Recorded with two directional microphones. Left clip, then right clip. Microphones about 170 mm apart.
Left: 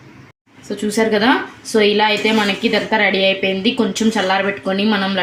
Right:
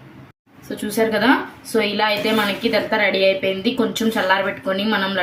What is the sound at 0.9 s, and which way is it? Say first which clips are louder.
A woman's voice: left 2 dB; 40° left (ahead or behind).